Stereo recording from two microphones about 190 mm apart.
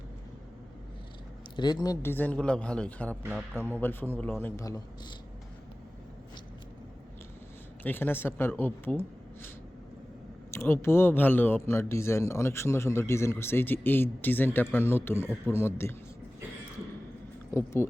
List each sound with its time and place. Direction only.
1.5 s speech: 20° left (ahead or behind)
7.9 s speech: 10° left (ahead or behind)
10.5 s speech: 15° left (ahead or behind)
17.5 s speech: 15° left (ahead or behind)